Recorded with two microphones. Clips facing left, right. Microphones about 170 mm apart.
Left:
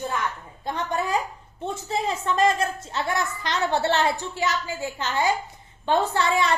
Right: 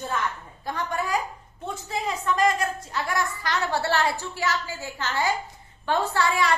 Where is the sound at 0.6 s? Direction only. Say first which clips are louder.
Left 2 dB; 20° left (ahead or behind).